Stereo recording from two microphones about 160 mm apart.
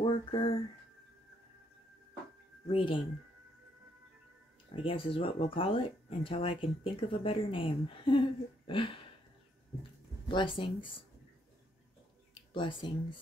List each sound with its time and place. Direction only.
0.0 s a sound: 35° left (ahead or behind)
2.7 s speech: 30° left (ahead or behind)
4.8 s speech: 35° left (ahead or behind)
10.2 s speech: 30° left (ahead or behind)
12.5 s speech: 30° left (ahead or behind)